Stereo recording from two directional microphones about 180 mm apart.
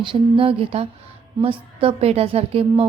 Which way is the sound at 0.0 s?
30° right (ahead or behind).